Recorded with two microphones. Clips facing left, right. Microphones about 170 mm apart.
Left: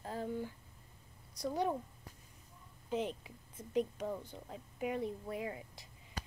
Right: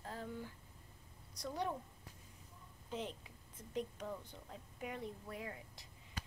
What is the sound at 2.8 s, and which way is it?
A woman's voice, 10° left (ahead or behind).